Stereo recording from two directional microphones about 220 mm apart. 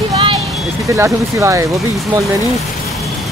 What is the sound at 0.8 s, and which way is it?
Speech, 15° right (ahead or behind).